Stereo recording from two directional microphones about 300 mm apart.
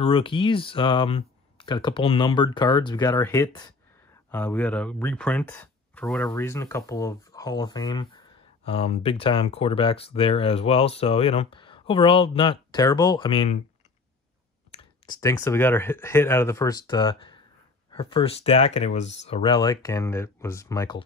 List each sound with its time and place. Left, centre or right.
0.0 s speech: centre
14.7 s clicking: left
15.1 s speech: centre